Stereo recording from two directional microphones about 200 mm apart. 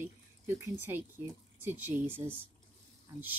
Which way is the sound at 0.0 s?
15° right (ahead or behind).